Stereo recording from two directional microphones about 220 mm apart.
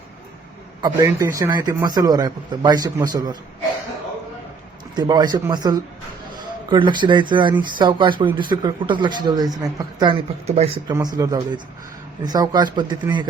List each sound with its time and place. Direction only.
0.8 s a man's voice: 15° right (ahead or behind)
4.9 s a man's voice: 20° right (ahead or behind)